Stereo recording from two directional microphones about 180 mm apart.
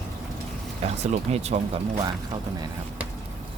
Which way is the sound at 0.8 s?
35° right (ahead or behind).